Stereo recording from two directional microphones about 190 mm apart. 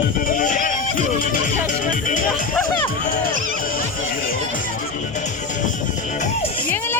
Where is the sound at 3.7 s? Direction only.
50° left (ahead or behind).